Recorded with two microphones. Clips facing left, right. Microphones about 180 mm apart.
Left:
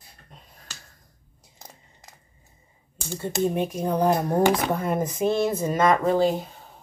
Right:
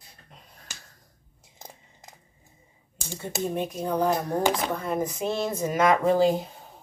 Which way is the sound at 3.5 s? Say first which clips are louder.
Left 3 dB; 10° left (ahead or behind).